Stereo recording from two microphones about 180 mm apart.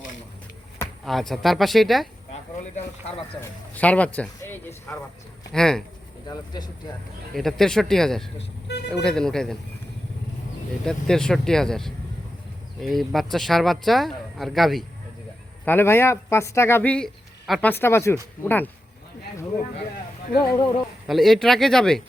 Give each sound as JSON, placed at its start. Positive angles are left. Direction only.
{"t": 1.0, "sound": "speech", "side_deg": 0}
{"t": 3.8, "sound": "speech", "side_deg": 10}
{"t": 6.2, "sound": "speech", "side_deg": 25}
{"t": 7.3, "sound": "speech", "side_deg": 0}
{"t": 10.8, "sound": "speech", "side_deg": 5}
{"t": 15.6, "sound": "speech", "side_deg": 10}
{"t": 17.7, "sound": "speech", "side_deg": 10}
{"t": 20.4, "sound": "speech", "side_deg": 20}
{"t": 21.1, "sound": "speech", "side_deg": 0}